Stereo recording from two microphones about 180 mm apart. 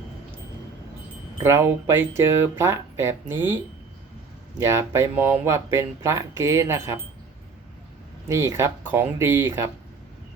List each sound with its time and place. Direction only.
1.4 s speech: 15° right (ahead or behind)
8.3 s speech: 15° right (ahead or behind)